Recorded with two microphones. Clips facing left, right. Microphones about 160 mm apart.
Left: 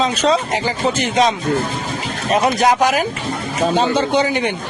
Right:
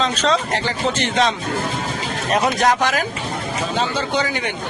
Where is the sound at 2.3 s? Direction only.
Centre (ahead or behind).